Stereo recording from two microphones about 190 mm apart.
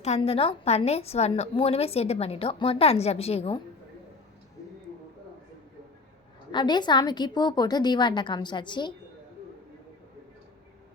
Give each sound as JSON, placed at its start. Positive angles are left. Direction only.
{"t": 0.0, "sound": "a woman's voice", "side_deg": 35}
{"t": 6.5, "sound": "a woman's voice", "side_deg": 25}